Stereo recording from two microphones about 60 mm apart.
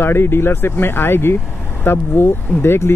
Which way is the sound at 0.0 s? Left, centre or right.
Left.